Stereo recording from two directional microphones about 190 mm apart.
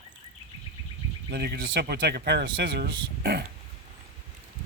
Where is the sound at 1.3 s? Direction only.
55° right (ahead or behind).